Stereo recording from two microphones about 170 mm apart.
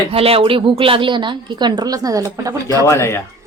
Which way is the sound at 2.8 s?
15° left (ahead or behind).